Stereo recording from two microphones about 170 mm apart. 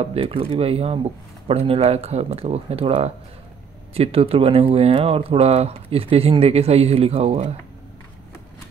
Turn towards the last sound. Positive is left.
turn(degrees=-35)  # may be behind; listen again after turning